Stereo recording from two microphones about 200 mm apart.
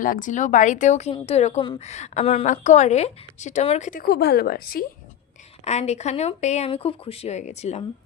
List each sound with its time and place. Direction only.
0.0 s speech: 40° left (ahead or behind)
5.6 s speech: 35° left (ahead or behind)